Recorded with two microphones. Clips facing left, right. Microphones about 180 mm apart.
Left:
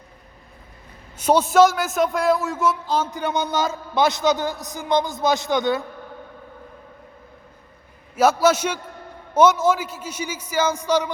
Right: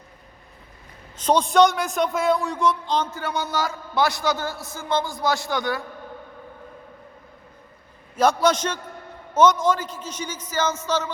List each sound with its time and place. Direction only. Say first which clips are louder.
1.1 s a man's voice: left 2 dB; 10° left (ahead or behind)
3.2 s a man's voice: left 3 dB; 20° left (ahead or behind)
8.1 s a man's voice: left 2 dB; 5° left (ahead or behind)